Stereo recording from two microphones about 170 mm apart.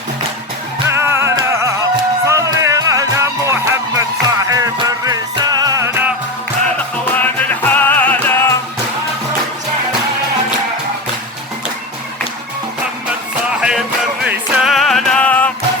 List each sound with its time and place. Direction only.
0.9 s music: 15° right (ahead or behind)
7.2 s music: 10° left (ahead or behind)
13.6 s music: 5° right (ahead or behind)